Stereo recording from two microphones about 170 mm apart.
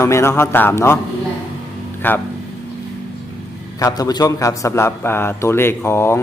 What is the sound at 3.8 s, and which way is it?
A man's voice, 20° left (ahead or behind).